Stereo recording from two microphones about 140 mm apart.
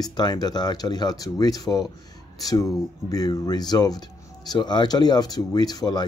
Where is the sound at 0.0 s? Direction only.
30° left (ahead or behind).